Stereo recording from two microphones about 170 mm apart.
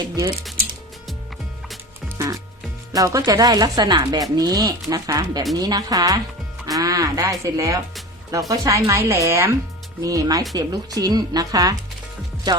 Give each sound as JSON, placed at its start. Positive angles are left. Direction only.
{"t": 0.0, "sound": "speech", "side_deg": -25}
{"t": 2.1, "sound": "music", "side_deg": -20}
{"t": 2.9, "sound": "speech", "side_deg": -20}